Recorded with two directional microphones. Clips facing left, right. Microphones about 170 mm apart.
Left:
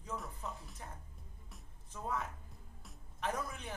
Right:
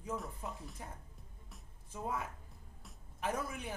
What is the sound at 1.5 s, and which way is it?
Music, 10° right (ahead or behind).